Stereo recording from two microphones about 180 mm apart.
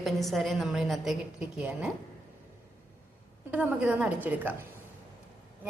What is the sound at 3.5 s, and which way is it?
A woman's voice, 10° right (ahead or behind).